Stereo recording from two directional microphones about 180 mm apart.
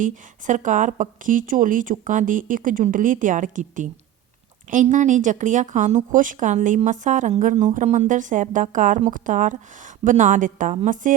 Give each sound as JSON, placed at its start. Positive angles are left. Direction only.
{"t": 0.0, "sound": "speech", "side_deg": -45}